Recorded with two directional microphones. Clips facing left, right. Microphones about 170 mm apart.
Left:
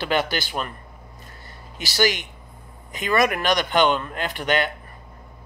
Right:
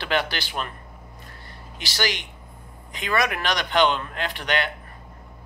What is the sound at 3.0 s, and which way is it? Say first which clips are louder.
Speech: left 4 dB; centre (ahead or behind).